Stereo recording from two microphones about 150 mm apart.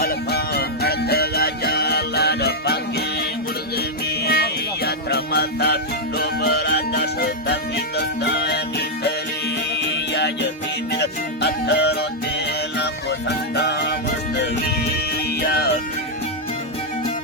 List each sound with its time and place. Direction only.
0.0 s music: 90° left
9.7 s music: 90° left
15.3 s music: 90° left